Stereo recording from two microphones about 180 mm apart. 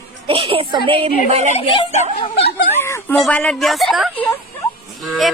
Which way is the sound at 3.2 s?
5° left (ahead or behind).